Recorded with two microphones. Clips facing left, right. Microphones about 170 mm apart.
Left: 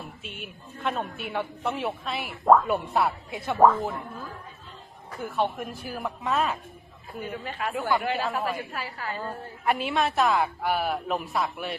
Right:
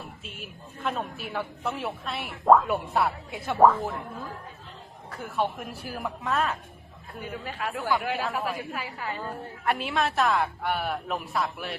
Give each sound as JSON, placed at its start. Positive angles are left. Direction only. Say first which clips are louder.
{"t": 0.2, "sound": "speech", "louder": "left 2 dB", "side_deg": 0}
{"t": 5.4, "sound": "speech", "louder": "left 1 dB", "side_deg": 0}
{"t": 8.8, "sound": "a woman's voice", "louder": "even", "side_deg": -15}
{"t": 9.2, "sound": "speech", "louder": "left 2 dB", "side_deg": 0}